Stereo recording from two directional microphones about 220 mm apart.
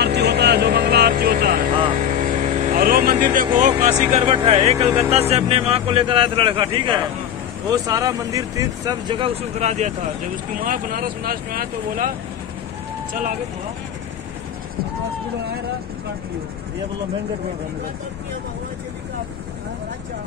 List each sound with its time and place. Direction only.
0.0 s music: 50° right (ahead or behind)
1.7 s vehicle: 25° right (ahead or behind)
2.1 s vehicle: 35° right (ahead or behind)
3.5 s speech: 35° right (ahead or behind)